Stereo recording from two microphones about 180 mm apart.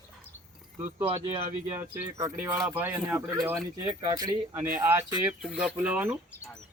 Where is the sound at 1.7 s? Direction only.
10° right (ahead or behind).